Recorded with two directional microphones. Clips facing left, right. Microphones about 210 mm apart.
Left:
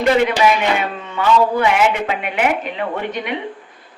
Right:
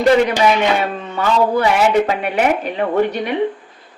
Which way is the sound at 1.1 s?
40° right (ahead or behind).